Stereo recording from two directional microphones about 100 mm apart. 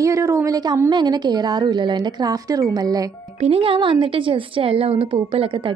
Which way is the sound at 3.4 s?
65° right (ahead or behind).